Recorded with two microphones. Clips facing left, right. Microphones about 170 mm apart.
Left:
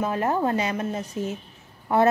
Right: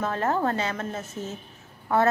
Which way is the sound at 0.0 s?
15° left (ahead or behind).